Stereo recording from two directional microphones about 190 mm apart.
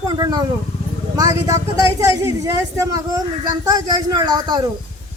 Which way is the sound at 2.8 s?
20° right (ahead or behind).